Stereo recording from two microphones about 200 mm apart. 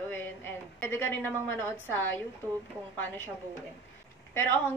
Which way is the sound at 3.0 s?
10° left (ahead or behind).